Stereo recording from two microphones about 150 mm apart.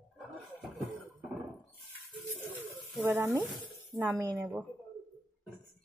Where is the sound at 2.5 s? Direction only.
15° right (ahead or behind).